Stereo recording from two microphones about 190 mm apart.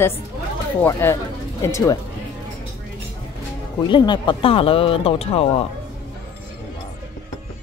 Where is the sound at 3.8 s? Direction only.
25° left (ahead or behind).